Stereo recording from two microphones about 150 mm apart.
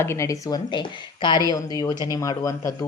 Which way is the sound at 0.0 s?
20° left (ahead or behind).